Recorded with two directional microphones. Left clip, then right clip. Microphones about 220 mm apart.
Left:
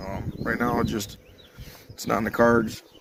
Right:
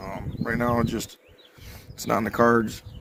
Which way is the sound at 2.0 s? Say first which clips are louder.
Even; 45° right (ahead or behind).